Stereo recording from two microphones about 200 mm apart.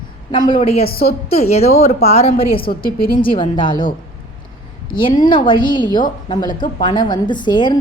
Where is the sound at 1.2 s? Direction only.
30° left (ahead or behind).